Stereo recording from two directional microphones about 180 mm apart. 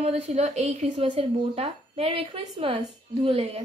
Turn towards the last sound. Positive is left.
turn(degrees=-35)  # may be behind; listen again after turning